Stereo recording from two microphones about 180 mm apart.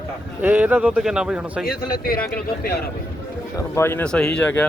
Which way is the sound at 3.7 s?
15° left (ahead or behind).